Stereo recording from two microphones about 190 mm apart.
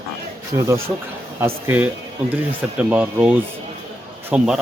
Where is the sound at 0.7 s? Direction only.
15° right (ahead or behind).